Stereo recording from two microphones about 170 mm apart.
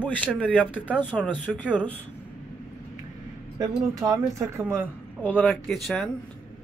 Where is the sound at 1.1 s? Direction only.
5° right (ahead or behind).